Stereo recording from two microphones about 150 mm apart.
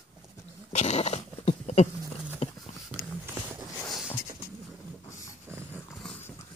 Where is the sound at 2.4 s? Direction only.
45° left (ahead or behind).